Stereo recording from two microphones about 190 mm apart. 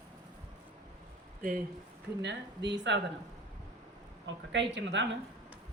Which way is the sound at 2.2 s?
65° right (ahead or behind).